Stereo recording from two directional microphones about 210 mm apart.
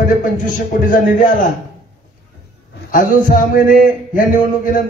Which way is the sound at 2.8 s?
40° left (ahead or behind).